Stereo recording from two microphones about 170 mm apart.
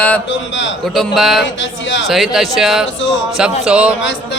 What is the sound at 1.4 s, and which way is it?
Speech, 90° left.